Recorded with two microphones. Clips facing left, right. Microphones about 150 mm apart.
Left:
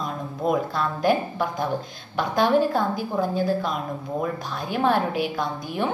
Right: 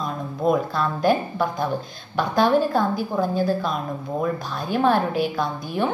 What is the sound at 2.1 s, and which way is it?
A woman's voice, 15° left (ahead or behind).